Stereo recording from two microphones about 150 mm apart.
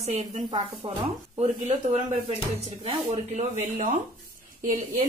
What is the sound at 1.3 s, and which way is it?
Speech, 45° right (ahead or behind).